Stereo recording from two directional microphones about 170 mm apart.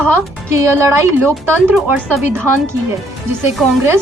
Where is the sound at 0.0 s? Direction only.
15° right (ahead or behind).